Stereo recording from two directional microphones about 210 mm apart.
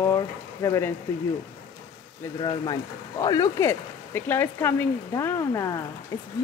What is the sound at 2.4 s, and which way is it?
Speech, 20° left (ahead or behind).